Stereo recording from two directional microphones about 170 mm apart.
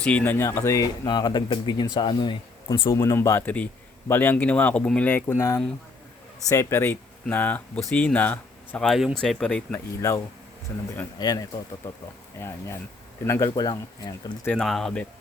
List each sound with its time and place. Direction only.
0.0 s speech: 10° left (ahead or behind); by 2.7 s 25° left (ahead or behind)
2.9 s speech: 15° left (ahead or behind)
9.7 s speech: 15° left (ahead or behind)
14.4 s speech: 5° left (ahead or behind)